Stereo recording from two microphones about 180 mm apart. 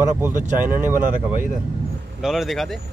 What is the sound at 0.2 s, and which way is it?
Speech, 10° right (ahead or behind).